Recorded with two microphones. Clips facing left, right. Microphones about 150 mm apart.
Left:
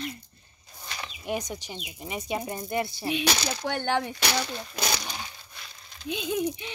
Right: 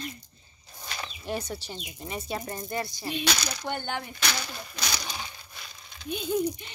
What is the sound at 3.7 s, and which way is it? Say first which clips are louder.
Speech: left 6 dB; 80° left.